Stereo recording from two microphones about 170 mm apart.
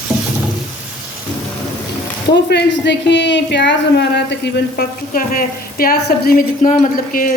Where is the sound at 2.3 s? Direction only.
80° left.